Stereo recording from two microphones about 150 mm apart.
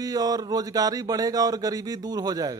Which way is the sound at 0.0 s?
25° right (ahead or behind).